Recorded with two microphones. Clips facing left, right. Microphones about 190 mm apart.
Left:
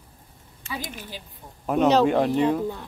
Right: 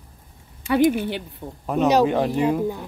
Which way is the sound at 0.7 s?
65° right (ahead or behind).